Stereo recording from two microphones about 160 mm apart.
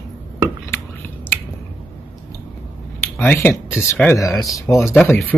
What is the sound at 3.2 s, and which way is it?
Speech, 10° left (ahead or behind).